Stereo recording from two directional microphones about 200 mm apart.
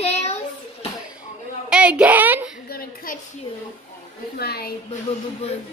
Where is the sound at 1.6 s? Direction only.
5° right (ahead or behind).